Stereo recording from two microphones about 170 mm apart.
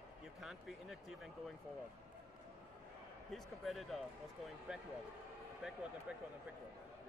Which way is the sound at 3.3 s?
Centre (ahead or behind).